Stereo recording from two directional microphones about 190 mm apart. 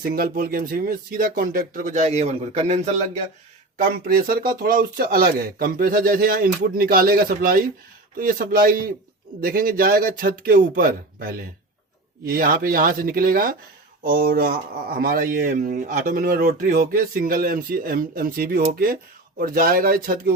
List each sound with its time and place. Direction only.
0.0 s speech: 50° right (ahead or behind)
3.8 s speech: 50° right (ahead or behind)